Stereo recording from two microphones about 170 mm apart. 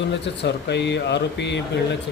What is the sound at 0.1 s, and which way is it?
Speech, 90° left.